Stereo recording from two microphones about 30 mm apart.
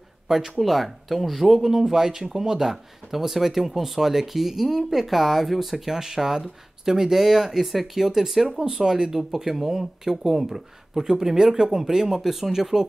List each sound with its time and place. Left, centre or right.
0.6 s speech: centre
8.5 s speech: right